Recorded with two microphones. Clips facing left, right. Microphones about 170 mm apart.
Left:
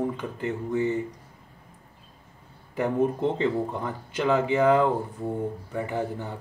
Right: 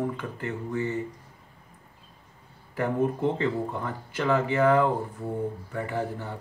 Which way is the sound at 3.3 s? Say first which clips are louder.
Left 2 dB; 20° left (ahead or behind).